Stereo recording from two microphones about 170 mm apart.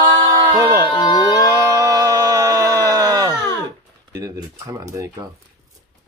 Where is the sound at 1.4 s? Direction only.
20° right (ahead or behind).